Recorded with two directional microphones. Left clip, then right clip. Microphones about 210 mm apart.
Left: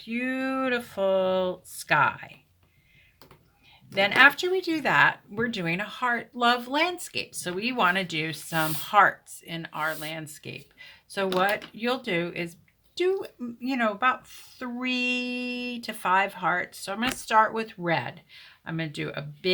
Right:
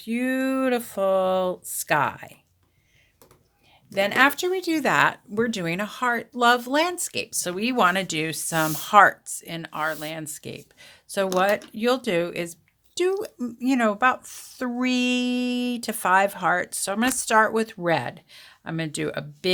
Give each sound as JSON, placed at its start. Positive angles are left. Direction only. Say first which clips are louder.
{"t": 0.0, "sound": "speech", "louder": "right 4 dB", "side_deg": -50}
{"t": 3.9, "sound": "speech", "louder": "left 1 dB", "side_deg": -50}